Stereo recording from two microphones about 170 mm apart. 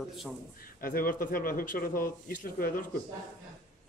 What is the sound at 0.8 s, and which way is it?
Speech, 55° left (ahead or behind).